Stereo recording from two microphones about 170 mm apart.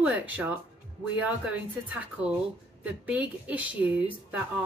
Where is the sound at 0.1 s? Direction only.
10° right (ahead or behind).